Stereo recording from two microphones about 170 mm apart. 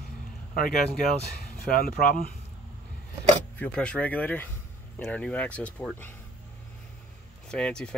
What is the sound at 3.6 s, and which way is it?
Speech, 5° left (ahead or behind).